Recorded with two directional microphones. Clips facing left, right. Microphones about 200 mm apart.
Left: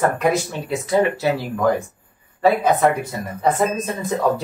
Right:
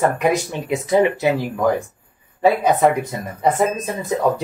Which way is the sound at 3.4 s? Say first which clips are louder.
Right 1 dB; 15° right (ahead or behind).